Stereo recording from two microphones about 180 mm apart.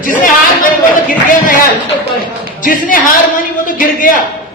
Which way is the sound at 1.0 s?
50° left (ahead or behind).